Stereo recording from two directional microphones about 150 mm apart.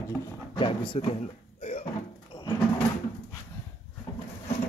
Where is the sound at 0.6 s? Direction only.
35° left (ahead or behind).